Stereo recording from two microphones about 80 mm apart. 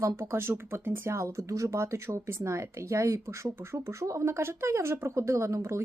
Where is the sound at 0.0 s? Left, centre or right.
Right.